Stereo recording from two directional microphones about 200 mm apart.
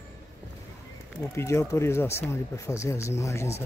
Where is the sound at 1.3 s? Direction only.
15° left (ahead or behind).